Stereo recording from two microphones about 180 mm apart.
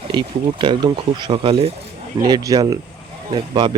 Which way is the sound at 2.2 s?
20° right (ahead or behind).